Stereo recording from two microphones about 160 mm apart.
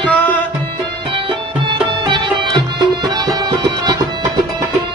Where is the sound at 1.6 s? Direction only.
30° right (ahead or behind).